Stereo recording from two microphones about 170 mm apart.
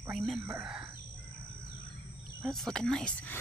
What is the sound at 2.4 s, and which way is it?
Speech, centre (ahead or behind).